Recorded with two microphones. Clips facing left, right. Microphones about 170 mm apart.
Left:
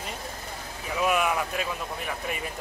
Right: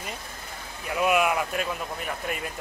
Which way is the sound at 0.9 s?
5° right (ahead or behind).